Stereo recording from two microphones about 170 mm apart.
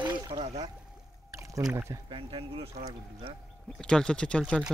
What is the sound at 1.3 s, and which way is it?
Rowboat, 20° right (ahead or behind).